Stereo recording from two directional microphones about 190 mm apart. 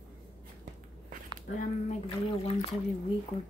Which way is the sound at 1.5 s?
40° left (ahead or behind).